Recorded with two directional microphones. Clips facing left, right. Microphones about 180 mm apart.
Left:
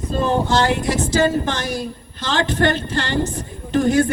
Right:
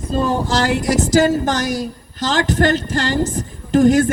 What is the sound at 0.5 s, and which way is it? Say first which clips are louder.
A woman's voice: right 1 dB; 40° right (ahead or behind).